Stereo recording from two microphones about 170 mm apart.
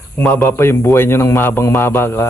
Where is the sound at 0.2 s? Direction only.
10° left (ahead or behind).